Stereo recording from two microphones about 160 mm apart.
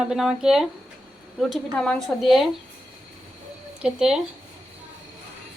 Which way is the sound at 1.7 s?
5° left (ahead or behind).